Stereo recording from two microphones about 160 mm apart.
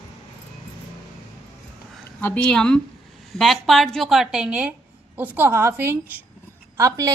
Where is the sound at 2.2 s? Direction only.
10° left (ahead or behind).